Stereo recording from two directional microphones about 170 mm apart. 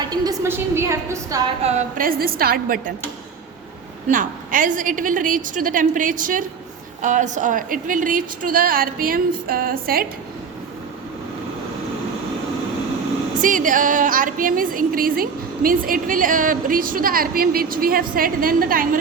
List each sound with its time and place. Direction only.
0.0 s a woman's voice: 20° right (ahead or behind)
1.6 s a woman's voice: 40° right (ahead or behind)
2.0 s speech: 60° right (ahead or behind)
4.1 s a woman's voice: 50° right (ahead or behind)
13.4 s speech: 50° right (ahead or behind)